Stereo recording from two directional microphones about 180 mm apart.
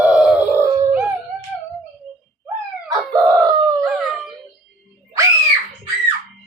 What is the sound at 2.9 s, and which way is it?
Dog, 20° right (ahead or behind).